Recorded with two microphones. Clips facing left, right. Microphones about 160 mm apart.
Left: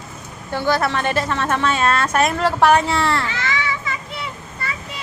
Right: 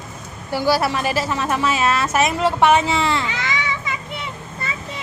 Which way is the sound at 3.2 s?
20° right (ahead or behind).